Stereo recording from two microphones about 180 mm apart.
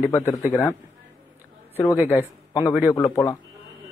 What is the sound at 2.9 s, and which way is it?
Speech, 20° left (ahead or behind).